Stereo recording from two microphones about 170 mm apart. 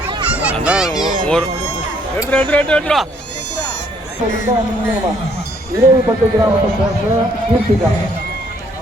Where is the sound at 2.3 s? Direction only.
10° left (ahead or behind).